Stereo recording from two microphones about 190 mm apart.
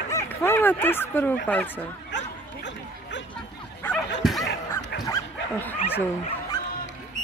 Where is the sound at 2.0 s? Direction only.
70° left (ahead or behind).